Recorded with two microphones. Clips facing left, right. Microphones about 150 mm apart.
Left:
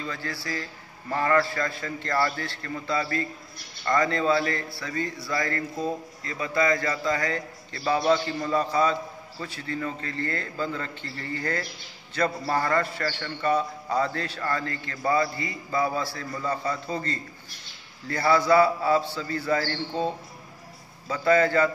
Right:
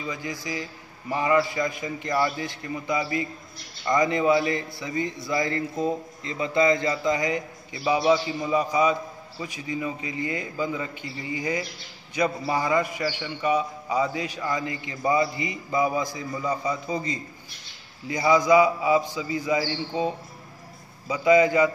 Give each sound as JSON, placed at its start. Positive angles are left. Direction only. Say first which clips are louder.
{"t": 0.0, "sound": "a man's voice", "louder": "right 1 dB", "side_deg": -15}